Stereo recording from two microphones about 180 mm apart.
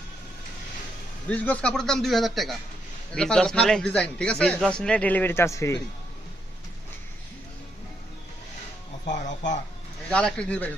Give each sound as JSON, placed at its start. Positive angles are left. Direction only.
{"t": 1.3, "sound": "a man's voice", "side_deg": 5}
{"t": 9.0, "sound": "speech", "side_deg": 40}
{"t": 10.1, "sound": "a man's voice", "side_deg": 5}